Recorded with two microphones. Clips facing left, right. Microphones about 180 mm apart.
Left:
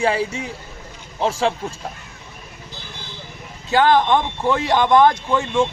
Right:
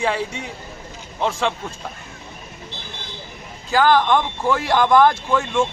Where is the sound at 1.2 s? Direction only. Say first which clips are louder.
Left 2 dB; 30° left (ahead or behind).